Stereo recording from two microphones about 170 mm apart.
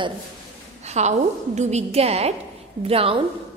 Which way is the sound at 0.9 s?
40° right (ahead or behind).